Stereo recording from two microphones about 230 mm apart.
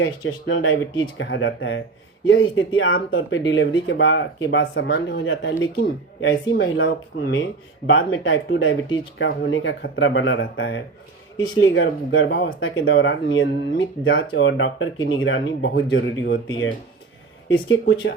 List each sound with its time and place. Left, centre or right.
0.0 s speech: left